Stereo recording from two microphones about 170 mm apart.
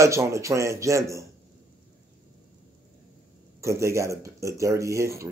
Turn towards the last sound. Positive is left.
turn(degrees=-15)  # may be behind; listen again after turning